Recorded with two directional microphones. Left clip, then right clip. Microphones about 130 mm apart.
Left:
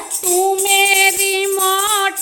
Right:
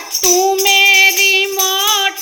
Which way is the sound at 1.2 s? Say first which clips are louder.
Right 4 dB; 30° left (ahead or behind).